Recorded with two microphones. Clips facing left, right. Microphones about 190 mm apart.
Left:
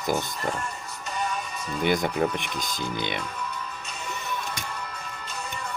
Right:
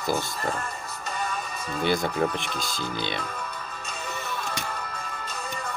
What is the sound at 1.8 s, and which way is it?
Speech, 20° left (ahead or behind).